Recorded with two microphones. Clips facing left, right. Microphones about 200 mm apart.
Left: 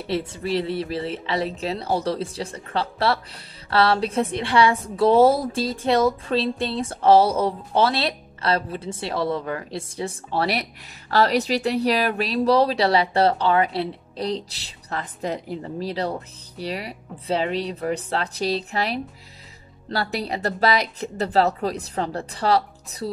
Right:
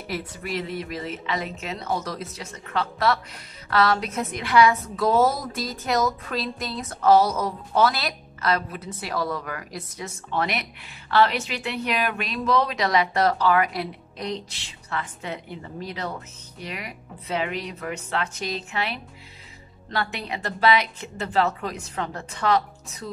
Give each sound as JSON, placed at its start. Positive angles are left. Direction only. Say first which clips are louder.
{"t": 0.0, "sound": "a woman's voice", "louder": "left 6 dB", "side_deg": 30}